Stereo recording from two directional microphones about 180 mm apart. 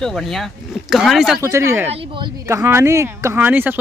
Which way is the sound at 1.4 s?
15° right (ahead or behind).